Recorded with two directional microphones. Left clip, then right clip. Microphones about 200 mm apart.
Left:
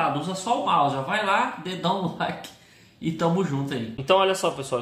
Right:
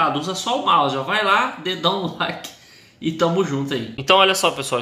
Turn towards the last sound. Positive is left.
turn(degrees=-5)  # may be behind; listen again after turning